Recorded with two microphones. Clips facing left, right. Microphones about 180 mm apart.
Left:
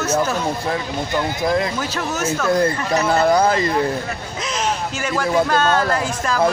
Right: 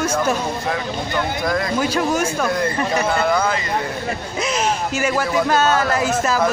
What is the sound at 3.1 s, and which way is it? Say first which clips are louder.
Speech: left 7 dB; 35° left (ahead or behind).